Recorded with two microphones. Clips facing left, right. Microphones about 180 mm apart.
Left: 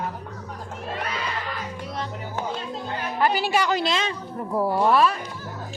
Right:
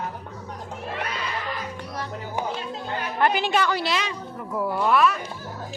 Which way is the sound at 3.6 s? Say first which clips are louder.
Left 2 dB; 25° left (ahead or behind).